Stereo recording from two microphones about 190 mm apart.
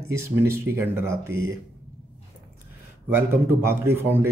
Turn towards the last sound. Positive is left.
turn(degrees=-10)  # may be behind; listen again after turning